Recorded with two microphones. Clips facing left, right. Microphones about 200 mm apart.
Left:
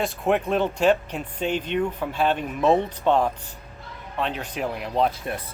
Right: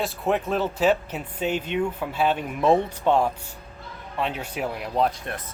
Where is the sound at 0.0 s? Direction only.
Centre (ahead or behind).